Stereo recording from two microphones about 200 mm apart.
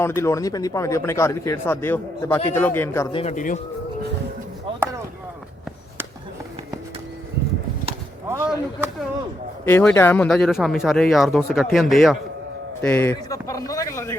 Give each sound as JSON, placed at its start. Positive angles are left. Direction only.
{"t": 0.0, "sound": "speech", "side_deg": 15}
{"t": 3.1, "sound": "a man's voice", "side_deg": 30}
{"t": 3.3, "sound": "speech", "side_deg": 40}
{"t": 8.4, "sound": "speech", "side_deg": 0}
{"t": 9.6, "sound": "speech", "side_deg": 10}
{"t": 13.5, "sound": "a sound", "side_deg": 15}